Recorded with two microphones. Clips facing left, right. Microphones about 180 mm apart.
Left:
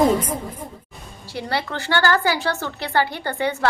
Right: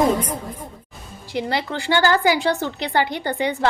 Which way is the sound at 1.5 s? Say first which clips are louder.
Right 1 dB; 15° right (ahead or behind).